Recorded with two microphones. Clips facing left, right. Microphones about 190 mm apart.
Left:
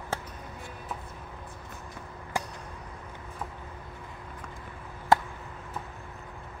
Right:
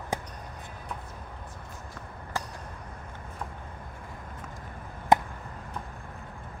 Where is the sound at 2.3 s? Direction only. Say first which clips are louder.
Left 2 dB; 15° left (ahead or behind).